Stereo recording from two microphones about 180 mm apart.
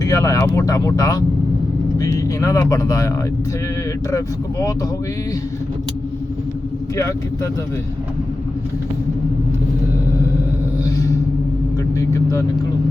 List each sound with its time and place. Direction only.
0.0 s speech: 15° left (ahead or behind)
10.8 s a sound: 15° left (ahead or behind)
11.9 s vehicle: 15° left (ahead or behind)